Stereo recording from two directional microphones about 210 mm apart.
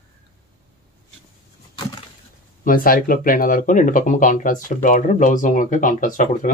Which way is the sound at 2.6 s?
40° left (ahead or behind).